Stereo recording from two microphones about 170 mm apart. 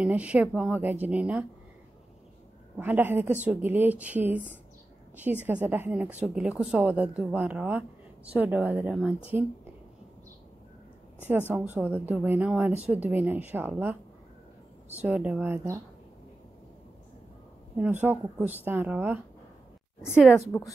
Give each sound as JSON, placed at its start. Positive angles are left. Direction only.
{"t": 0.0, "sound": "speech", "side_deg": -10}
{"t": 2.8, "sound": "a woman's voice", "side_deg": -10}
{"t": 11.7, "sound": "speech", "side_deg": -10}
{"t": 17.7, "sound": "speech", "side_deg": -10}
{"t": 20.3, "sound": "a woman's voice", "side_deg": 20}